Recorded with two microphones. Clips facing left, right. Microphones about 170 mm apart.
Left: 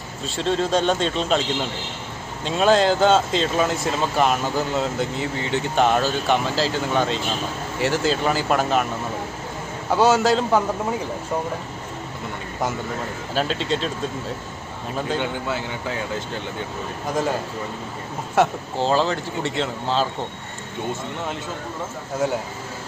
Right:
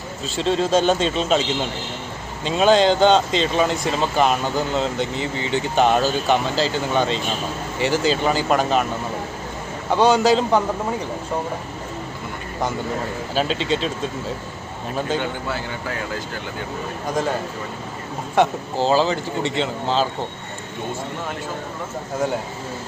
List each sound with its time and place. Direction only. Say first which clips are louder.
0.3 s speech: right 2 dB; centre (ahead or behind)
9.9 s speech: right 1 dB; 5° left (ahead or behind)
13.3 s speech: right 1 dB; centre (ahead or behind)
15.2 s a man's voice: even; 20° left (ahead or behind)
18.3 s speech: right 1 dB; centre (ahead or behind)